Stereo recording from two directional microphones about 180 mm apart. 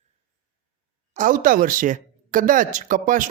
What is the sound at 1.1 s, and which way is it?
Speech, 45° right (ahead or behind).